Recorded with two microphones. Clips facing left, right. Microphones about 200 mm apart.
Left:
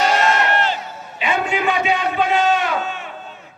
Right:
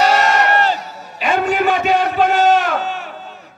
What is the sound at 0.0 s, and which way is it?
Crowd, 40° right (ahead or behind).